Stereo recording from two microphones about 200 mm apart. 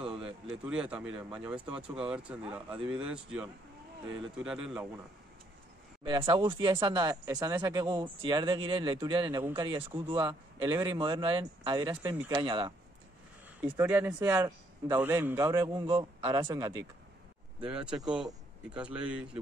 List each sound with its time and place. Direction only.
0.1 s speech: 5° right (ahead or behind)
6.0 s speech: 25° right (ahead or behind)
13.6 s a man's voice: 10° right (ahead or behind)
17.6 s speech: 5° right (ahead or behind)